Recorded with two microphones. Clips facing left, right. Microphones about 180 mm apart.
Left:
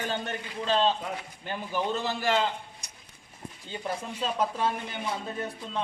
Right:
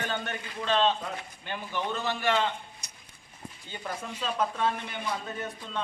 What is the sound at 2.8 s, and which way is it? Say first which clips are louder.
Clip-clop: left 1 dB; 55° left (ahead or behind).